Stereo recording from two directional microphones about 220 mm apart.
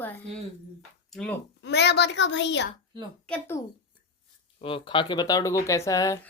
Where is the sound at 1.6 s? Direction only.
50° left (ahead or behind).